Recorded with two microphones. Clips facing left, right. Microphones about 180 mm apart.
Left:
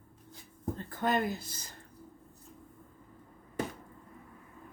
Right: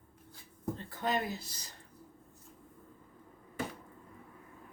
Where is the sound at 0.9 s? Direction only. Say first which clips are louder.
Left 4 dB; 50° left (ahead or behind).